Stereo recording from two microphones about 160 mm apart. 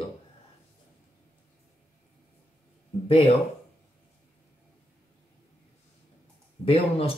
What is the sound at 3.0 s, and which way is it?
Speech, 35° left (ahead or behind).